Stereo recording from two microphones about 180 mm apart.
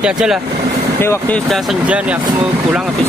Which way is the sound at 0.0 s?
5° right (ahead or behind).